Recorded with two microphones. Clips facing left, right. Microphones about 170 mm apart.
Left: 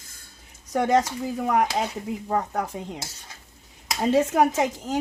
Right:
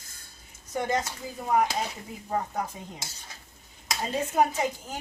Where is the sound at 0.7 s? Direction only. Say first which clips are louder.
Left 7 dB; 80° left.